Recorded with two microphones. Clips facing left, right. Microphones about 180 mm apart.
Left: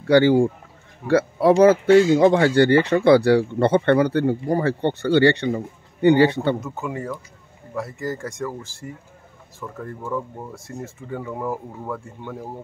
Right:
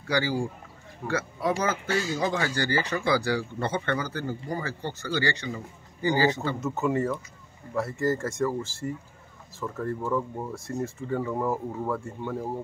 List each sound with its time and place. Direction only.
0.1 s speech: 60° left (ahead or behind)
6.6 s speech: centre (ahead or behind)